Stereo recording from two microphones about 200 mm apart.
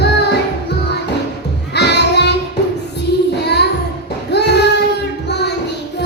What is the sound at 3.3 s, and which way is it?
Child singing, 55° left (ahead or behind).